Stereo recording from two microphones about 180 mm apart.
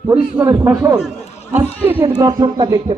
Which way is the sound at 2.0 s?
20° right (ahead or behind).